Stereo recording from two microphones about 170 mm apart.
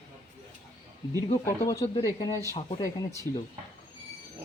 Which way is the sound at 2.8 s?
20° left (ahead or behind).